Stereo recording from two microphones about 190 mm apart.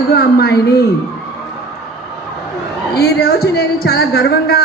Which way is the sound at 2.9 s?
55° left (ahead or behind).